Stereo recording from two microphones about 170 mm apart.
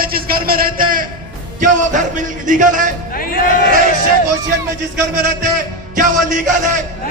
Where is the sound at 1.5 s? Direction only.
50° right (ahead or behind).